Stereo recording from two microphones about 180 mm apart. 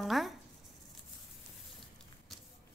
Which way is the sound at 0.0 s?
Centre (ahead or behind).